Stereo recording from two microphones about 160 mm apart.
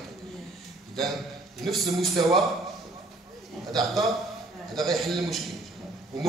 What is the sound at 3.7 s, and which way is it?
A man's voice, centre (ahead or behind).